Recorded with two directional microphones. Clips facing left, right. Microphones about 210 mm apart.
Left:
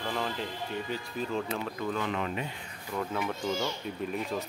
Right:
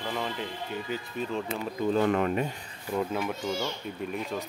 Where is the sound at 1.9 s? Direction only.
50° right (ahead or behind).